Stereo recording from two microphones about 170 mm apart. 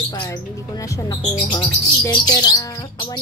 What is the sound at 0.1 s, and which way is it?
Speech, 20° left (ahead or behind).